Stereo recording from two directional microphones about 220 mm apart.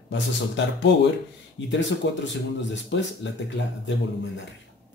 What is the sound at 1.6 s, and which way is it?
A man's voice, 55° left (ahead or behind).